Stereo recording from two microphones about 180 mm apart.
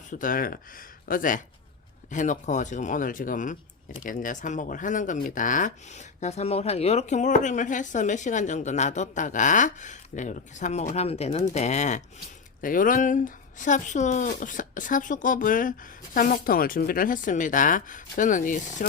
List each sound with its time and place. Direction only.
0.1 s speech: 50° left (ahead or behind)